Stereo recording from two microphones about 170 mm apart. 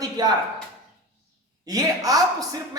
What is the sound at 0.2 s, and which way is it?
Speech, 25° right (ahead or behind).